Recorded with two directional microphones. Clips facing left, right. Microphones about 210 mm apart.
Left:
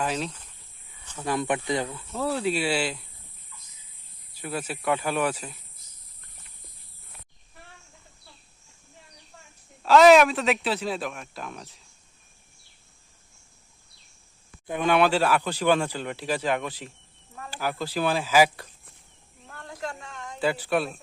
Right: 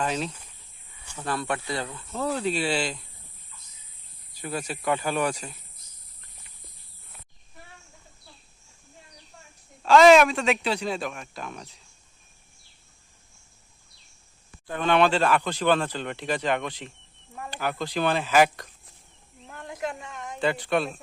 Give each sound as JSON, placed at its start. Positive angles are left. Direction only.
{"t": 0.0, "sound": "speech", "side_deg": 0}
{"t": 1.2, "sound": "speech", "side_deg": 15}
{"t": 4.4, "sound": "speech", "side_deg": 5}
{"t": 9.8, "sound": "speech", "side_deg": 5}
{"t": 14.7, "sound": "speech", "side_deg": 10}
{"t": 19.5, "sound": "a sound", "side_deg": -20}
{"t": 20.4, "sound": "speech", "side_deg": 5}